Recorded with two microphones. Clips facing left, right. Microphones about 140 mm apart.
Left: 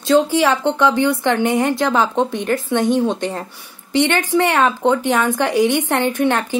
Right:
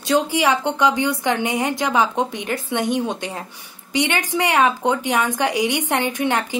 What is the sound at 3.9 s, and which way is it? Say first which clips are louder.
Speech: left 5 dB; 15° right (ahead or behind).